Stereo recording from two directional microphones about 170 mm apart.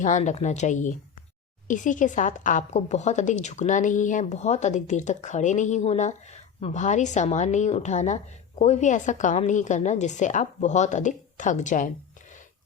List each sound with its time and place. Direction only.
0.0 s a woman's voice: 45° left (ahead or behind)